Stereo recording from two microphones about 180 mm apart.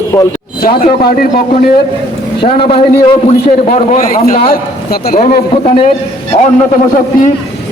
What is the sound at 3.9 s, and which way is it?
A man's voice, 50° left (ahead or behind).